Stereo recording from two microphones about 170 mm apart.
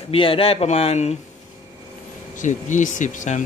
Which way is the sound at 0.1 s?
35° left (ahead or behind).